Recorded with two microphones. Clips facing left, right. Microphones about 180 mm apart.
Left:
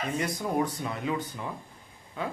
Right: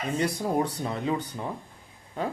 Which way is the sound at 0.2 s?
30° right (ahead or behind).